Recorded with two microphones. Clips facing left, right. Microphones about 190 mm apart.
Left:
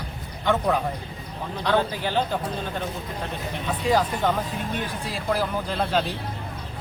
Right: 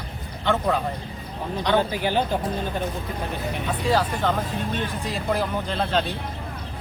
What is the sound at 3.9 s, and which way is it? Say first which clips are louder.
Speech: left 1 dB; 15° left (ahead or behind).